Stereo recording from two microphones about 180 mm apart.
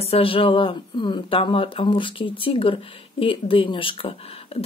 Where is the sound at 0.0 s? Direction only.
30° left (ahead or behind).